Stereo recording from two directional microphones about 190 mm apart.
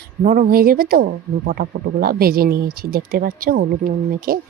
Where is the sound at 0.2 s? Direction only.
45° right (ahead or behind).